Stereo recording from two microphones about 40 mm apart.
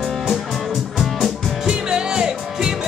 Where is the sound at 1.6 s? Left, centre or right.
Centre.